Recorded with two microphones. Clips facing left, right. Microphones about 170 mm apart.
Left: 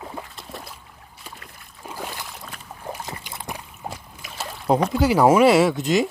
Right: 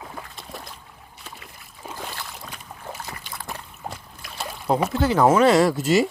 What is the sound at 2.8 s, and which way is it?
Boat, 15° left (ahead or behind).